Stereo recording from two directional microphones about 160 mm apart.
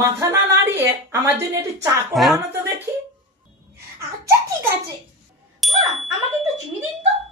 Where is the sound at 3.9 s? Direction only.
15° right (ahead or behind).